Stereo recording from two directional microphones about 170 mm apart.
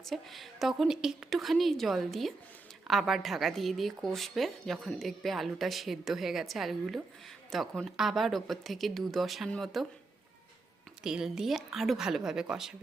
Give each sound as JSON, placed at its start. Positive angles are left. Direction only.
{"t": 0.0, "sound": "a woman's voice", "side_deg": 0}
{"t": 11.0, "sound": "a woman's voice", "side_deg": -5}